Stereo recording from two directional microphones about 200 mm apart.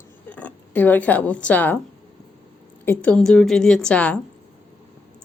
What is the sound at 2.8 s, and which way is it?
A woman's voice, 10° left (ahead or behind).